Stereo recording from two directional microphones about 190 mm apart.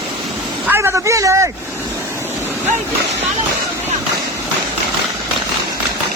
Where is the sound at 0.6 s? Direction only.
10° right (ahead or behind).